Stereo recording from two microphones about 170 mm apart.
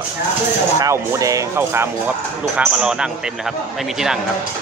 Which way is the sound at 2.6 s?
5° right (ahead or behind).